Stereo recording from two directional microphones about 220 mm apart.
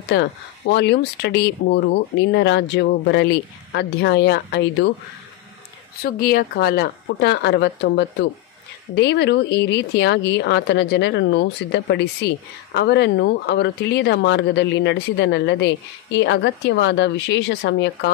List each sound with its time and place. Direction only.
0.1 s speech: 50° left (ahead or behind)
6.2 s speech: 45° left (ahead or behind)